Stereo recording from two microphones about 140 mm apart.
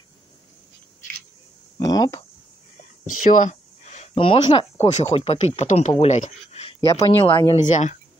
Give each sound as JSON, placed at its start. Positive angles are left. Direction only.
{"t": 1.8, "sound": "speech", "side_deg": 25}
{"t": 2.8, "sound": "a sound", "side_deg": 65}
{"t": 4.1, "sound": "speech", "side_deg": 40}
{"t": 7.6, "sound": "speech", "side_deg": 60}